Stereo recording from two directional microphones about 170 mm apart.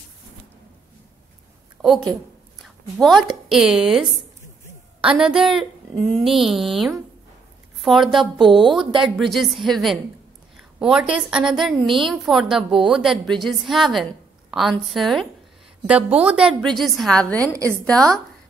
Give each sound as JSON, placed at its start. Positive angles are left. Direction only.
{"t": 1.8, "sound": "a woman's voice", "side_deg": 0}
{"t": 17.5, "sound": "a woman's voice", "side_deg": -15}
{"t": 17.8, "sound": "a woman's voice", "side_deg": 5}